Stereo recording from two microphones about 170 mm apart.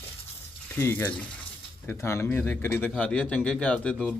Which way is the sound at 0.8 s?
10° left (ahead or behind).